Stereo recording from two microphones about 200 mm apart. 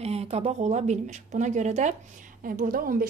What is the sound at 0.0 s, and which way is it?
A woman's voice, 30° right (ahead or behind).